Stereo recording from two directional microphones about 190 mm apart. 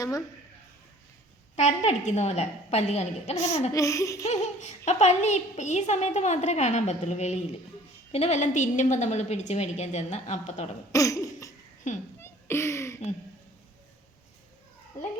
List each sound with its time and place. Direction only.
1.5 s a woman's voice: 35° left (ahead or behind)
3.7 s laughter: 15° left (ahead or behind)
4.3 s a woman's voice: 35° left (ahead or behind)
10.9 s a sound: 15° left (ahead or behind)
11.9 s a woman's voice: 40° left (ahead or behind)
12.2 s a sound: 15° left (ahead or behind)